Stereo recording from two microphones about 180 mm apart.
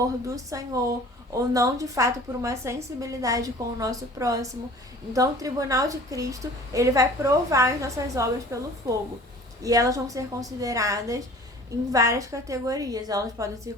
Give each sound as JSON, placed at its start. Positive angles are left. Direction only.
{"t": 0.0, "sound": "a woman's voice", "side_deg": -20}